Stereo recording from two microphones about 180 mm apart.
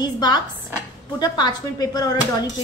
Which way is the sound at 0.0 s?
25° left (ahead or behind).